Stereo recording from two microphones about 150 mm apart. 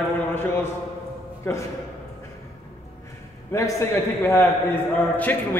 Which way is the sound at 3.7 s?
15° left (ahead or behind).